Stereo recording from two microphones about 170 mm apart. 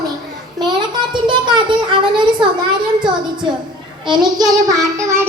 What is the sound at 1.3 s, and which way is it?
A child's voice, 25° right (ahead or behind).